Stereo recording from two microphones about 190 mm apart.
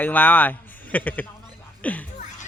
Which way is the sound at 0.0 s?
10° left (ahead or behind).